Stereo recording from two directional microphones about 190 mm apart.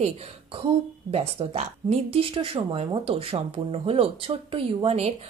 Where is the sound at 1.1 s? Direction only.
30° right (ahead or behind).